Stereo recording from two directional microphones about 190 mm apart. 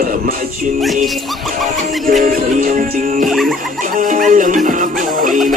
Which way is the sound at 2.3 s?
45° right (ahead or behind).